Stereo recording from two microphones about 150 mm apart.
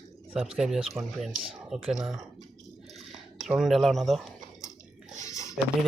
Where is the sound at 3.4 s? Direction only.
Centre (ahead or behind).